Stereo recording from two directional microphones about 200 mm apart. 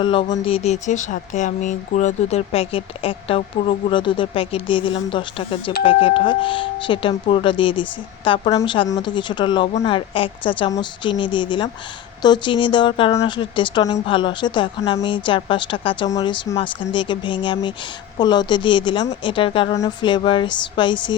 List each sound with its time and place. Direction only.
0.0 s speech: 25° left (ahead or behind)